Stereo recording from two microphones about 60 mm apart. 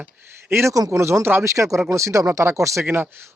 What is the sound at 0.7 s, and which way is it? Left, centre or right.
Speech, right.